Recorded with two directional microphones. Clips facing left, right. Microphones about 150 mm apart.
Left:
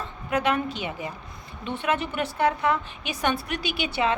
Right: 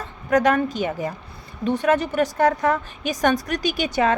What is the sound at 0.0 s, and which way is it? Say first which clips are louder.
A woman's voice: right 7 dB; 45° right (ahead or behind).